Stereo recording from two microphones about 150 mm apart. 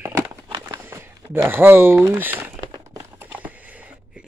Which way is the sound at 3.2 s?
10° right (ahead or behind).